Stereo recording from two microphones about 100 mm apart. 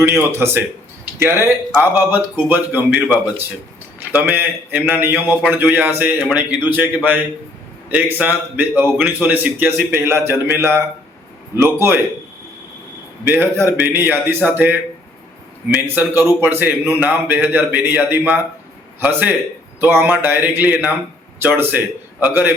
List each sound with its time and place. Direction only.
0.0 s a man's voice: 25° right (ahead or behind)
13.2 s a man's voice: 20° right (ahead or behind)